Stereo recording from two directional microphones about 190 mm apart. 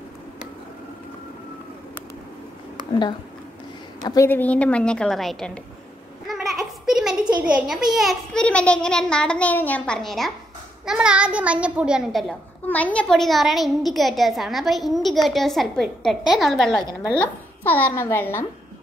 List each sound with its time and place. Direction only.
2.9 s a child's voice: 25° left (ahead or behind); by 5.6 s centre (ahead or behind)
6.2 s a sound: centre (ahead or behind)
7.3 s a child's voice: 5° right (ahead or behind); by 18.4 s 10° left (ahead or behind)